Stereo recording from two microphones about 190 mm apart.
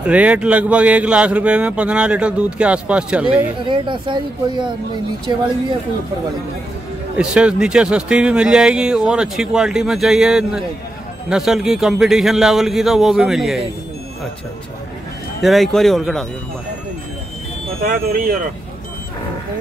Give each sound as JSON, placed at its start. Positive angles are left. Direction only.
{"t": 0.0, "sound": "speech", "side_deg": -5}
{"t": 3.6, "sound": "speech", "side_deg": -25}
{"t": 7.2, "sound": "speech", "side_deg": -5}
{"t": 15.4, "sound": "speech", "side_deg": 0}
{"t": 17.8, "sound": "speech", "side_deg": -45}